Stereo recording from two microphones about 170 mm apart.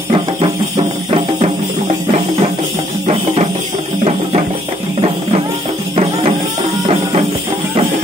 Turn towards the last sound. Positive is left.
turn(degrees=-35)  # may be behind; listen again after turning